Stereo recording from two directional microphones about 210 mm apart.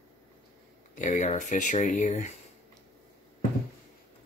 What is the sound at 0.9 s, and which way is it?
Speech, 35° left (ahead or behind).